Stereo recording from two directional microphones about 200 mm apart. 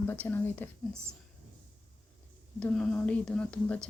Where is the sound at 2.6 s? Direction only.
5° left (ahead or behind).